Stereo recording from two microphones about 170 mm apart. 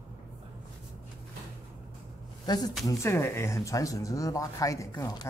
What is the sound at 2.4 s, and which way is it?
Speech, 25° left (ahead or behind).